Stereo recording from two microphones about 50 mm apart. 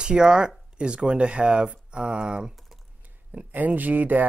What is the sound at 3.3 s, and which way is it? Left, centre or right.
Speech, right.